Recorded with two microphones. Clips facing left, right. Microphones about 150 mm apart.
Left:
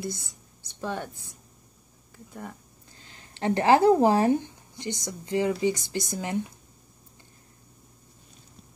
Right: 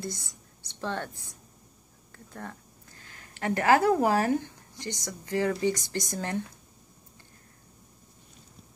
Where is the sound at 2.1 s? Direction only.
10° left (ahead or behind).